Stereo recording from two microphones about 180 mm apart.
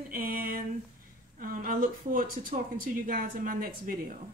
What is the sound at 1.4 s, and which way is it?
Speech, 50° right (ahead or behind).